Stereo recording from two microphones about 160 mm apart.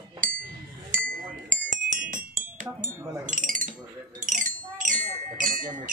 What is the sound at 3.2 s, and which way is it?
Chink, 55° right (ahead or behind).